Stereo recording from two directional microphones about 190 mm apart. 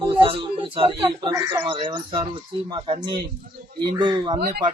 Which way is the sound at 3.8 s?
25° right (ahead or behind).